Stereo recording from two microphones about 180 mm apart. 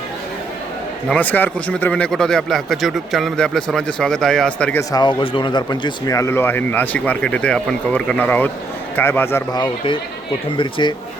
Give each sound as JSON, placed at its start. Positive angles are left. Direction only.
{"t": 1.0, "sound": "speech", "side_deg": 10}
{"t": 4.8, "sound": "speech", "side_deg": 20}
{"t": 9.6, "sound": "speech", "side_deg": 30}